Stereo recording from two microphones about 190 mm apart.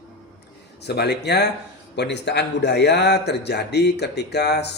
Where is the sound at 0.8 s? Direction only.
60° left (ahead or behind).